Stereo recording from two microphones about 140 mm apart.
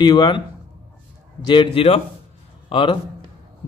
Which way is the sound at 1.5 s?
40° left (ahead or behind).